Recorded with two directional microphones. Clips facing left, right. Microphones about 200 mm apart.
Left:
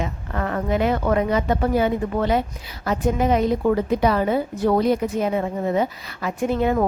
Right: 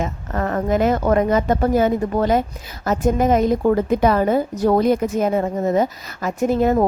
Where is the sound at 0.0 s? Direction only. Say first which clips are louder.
Right 3 dB; 40° right (ahead or behind).